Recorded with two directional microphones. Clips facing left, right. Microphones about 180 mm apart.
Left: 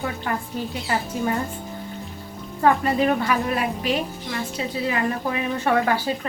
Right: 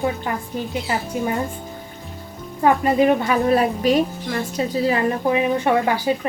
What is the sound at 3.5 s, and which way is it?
A woman's voice, 35° right (ahead or behind).